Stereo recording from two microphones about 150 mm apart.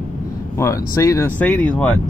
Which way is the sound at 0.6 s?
20° left (ahead or behind).